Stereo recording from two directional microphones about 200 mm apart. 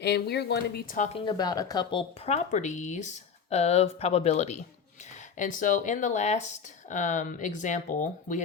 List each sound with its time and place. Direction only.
0.0 s speech: 55° left (ahead or behind)
0.9 s speech: 35° left (ahead or behind)
1.2 s speech: 20° left (ahead or behind); by 8.4 s 40° left (ahead or behind)